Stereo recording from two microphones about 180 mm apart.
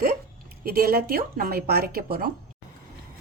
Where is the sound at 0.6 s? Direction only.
55° right (ahead or behind).